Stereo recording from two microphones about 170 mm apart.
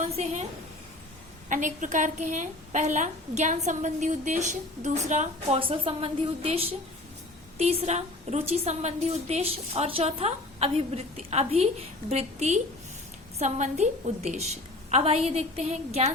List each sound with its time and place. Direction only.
0.0 s a woman's voice: 40° right (ahead or behind)
1.5 s a woman's voice: 50° right (ahead or behind)
5.5 s a woman's voice: 30° right (ahead or behind)